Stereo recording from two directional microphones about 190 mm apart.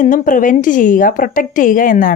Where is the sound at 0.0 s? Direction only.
45° left (ahead or behind).